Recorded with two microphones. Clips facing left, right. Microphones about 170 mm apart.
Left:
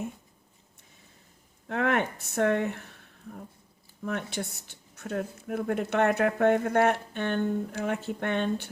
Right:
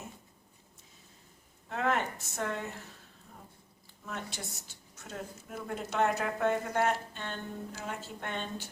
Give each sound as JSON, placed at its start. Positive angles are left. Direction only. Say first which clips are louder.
{"t": 1.6, "sound": "speech", "louder": "left 4 dB", "side_deg": 60}